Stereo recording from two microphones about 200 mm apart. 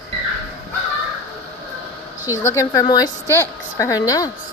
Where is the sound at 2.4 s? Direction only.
15° left (ahead or behind).